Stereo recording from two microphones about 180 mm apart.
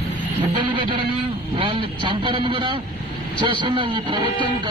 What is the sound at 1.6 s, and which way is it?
Speech, 25° right (ahead or behind).